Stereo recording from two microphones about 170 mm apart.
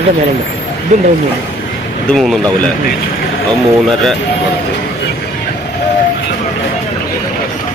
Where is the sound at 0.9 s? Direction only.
45° right (ahead or behind).